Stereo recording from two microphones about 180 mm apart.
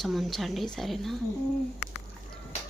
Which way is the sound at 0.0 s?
Centre (ahead or behind).